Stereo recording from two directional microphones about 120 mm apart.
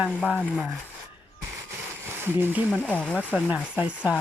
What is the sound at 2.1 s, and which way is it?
Speech, 20° right (ahead or behind).